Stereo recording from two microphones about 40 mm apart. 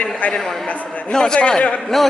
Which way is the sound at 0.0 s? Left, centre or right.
Left.